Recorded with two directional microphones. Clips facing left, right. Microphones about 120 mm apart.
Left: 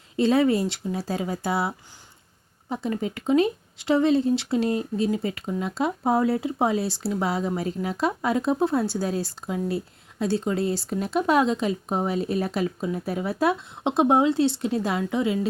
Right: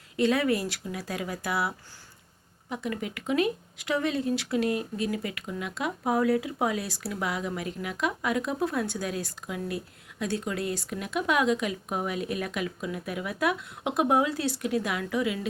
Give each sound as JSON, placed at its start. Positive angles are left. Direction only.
{"t": 0.2, "sound": "speech", "side_deg": 30}